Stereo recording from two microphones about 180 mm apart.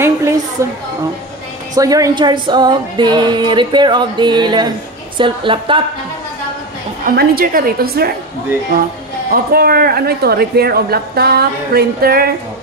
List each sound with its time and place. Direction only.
0.6 s a woman's voice: 15° right (ahead or behind)
1.8 s speech: 20° right (ahead or behind)
7.1 s speech: 55° right (ahead or behind)
9.3 s speech: 55° right (ahead or behind)